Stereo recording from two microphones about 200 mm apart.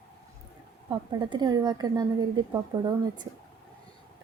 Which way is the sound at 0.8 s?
20° right (ahead or behind).